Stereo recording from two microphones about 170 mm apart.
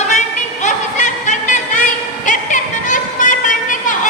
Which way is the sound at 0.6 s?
45° left (ahead or behind).